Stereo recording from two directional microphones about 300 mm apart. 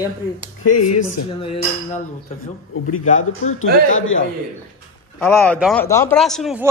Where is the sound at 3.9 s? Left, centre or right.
Left.